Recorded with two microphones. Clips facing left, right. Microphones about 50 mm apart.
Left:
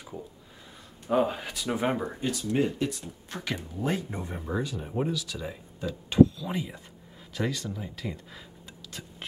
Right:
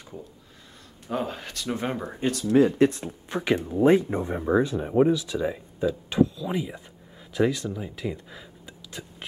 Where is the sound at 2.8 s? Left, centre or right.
Right.